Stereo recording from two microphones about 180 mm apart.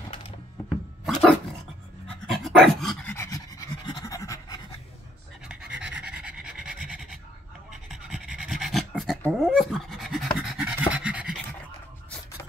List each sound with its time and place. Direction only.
0.7 s dog: centre (ahead or behind); by 4.6 s 20° left (ahead or behind)
5.5 s pant: 5° right (ahead or behind)
7.7 s a sound: 5° right (ahead or behind)
10.9 s pant: 5° right (ahead or behind)